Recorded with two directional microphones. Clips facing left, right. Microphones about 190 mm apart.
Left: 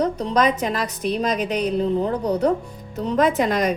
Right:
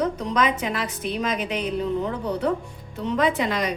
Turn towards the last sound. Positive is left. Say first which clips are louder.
# left 4 dB
turn(degrees=45)  # may be behind; listen again after turning